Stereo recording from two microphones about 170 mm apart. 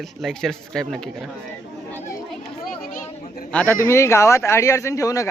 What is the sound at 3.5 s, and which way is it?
A man's voice, 5° left (ahead or behind).